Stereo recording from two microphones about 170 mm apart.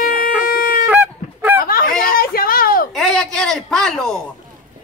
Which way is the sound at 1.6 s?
60° left (ahead or behind).